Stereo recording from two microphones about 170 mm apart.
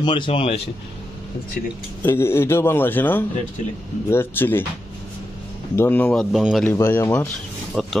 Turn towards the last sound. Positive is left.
turn(degrees=0)  # may be behind; listen again after turning